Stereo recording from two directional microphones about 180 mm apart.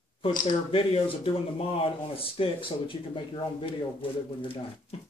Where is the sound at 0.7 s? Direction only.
30° left (ahead or behind).